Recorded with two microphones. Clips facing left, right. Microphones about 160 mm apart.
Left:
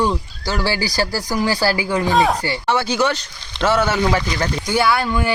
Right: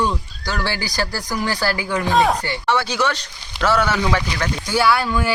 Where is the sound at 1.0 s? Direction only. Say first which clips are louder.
Left 2 dB; 35° left (ahead or behind).